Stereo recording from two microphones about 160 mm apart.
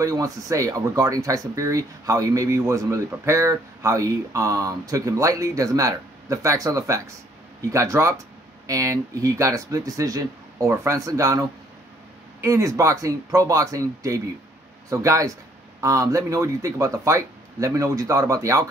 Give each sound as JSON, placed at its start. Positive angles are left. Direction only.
{"t": 0.0, "sound": "speech", "side_deg": -20}